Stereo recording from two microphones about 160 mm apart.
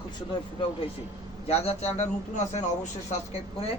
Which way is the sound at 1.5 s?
40° left (ahead or behind).